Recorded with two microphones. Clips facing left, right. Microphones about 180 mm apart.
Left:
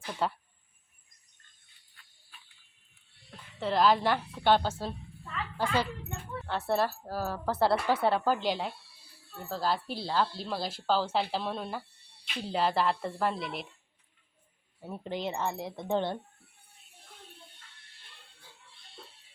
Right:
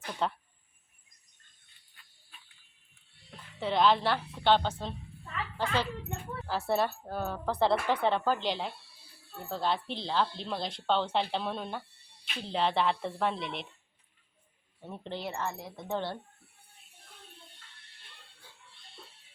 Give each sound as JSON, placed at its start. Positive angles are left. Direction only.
{"t": 0.0, "sound": "speech", "side_deg": 5}
{"t": 3.2, "sound": "a woman's voice", "side_deg": 0}
{"t": 6.5, "sound": "speech", "side_deg": 0}
{"t": 14.8, "sound": "speech", "side_deg": 5}
{"t": 15.2, "sound": "speech", "side_deg": 20}